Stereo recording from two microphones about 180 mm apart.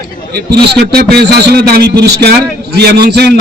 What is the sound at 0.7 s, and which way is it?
A man's voice, 60° right (ahead or behind).